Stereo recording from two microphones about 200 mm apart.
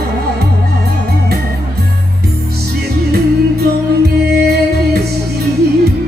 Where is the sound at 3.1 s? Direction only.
50° right (ahead or behind).